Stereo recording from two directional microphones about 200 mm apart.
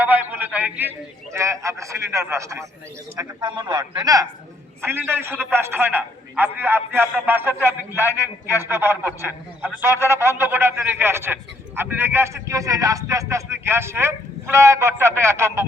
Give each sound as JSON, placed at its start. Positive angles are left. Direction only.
{"t": 0.0, "sound": "a man's voice", "side_deg": -10}